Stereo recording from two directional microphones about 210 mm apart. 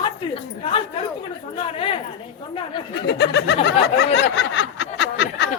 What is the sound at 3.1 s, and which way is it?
Snicker, 55° left (ahead or behind).